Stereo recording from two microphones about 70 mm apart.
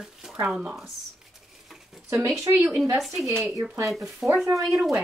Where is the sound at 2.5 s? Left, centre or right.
Right.